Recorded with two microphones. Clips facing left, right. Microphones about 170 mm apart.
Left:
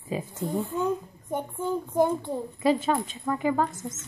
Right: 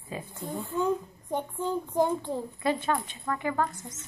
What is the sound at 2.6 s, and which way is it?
A woman's voice, 20° left (ahead or behind).